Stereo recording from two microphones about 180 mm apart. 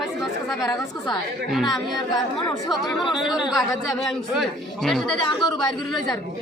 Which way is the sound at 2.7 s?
Centre (ahead or behind).